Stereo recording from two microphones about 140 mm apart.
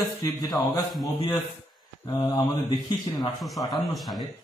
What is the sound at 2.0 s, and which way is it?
Speech, 30° left (ahead or behind).